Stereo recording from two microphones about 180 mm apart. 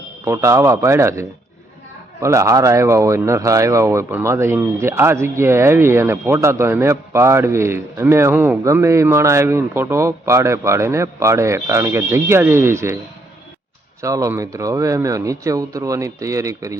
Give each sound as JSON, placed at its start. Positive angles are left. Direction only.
{"t": 0.3, "sound": "speech", "side_deg": -15}
{"t": 14.0, "sound": "speech", "side_deg": -15}